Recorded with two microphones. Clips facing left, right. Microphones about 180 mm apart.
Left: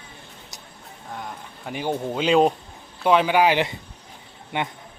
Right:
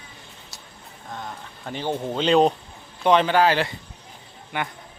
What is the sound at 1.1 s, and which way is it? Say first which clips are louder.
Speech: even; 10° left (ahead or behind).